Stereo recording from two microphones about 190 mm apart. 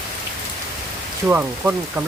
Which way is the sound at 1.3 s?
10° right (ahead or behind).